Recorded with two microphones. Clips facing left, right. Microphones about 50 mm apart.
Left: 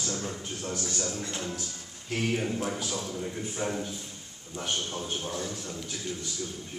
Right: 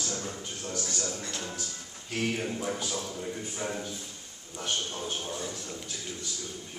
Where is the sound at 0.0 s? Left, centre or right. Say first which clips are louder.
Left 2 dB; centre.